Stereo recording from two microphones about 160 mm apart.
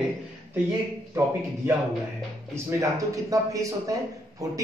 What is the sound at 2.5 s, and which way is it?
Speech, 20° right (ahead or behind).